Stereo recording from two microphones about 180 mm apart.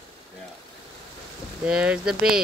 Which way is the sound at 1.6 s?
5° right (ahead or behind).